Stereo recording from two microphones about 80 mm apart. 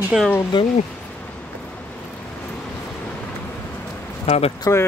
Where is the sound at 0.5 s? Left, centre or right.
Left.